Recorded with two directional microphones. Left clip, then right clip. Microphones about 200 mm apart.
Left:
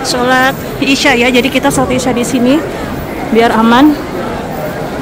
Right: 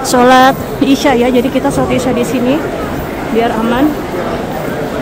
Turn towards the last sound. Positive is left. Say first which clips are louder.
# left 5 dB
turn(degrees=20)  # may be behind; listen again after turning